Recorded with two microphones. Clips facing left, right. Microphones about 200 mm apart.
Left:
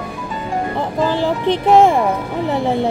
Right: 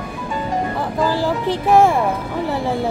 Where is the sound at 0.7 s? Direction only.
20° left (ahead or behind).